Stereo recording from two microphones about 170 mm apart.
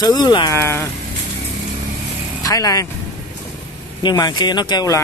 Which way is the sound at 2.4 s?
20° left (ahead or behind).